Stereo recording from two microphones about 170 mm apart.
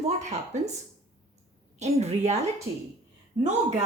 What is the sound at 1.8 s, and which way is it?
A woman's voice, 40° right (ahead or behind).